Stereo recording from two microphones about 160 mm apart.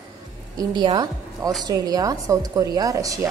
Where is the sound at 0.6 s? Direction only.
25° right (ahead or behind).